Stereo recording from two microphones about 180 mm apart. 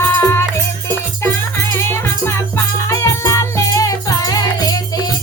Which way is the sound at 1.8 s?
15° left (ahead or behind).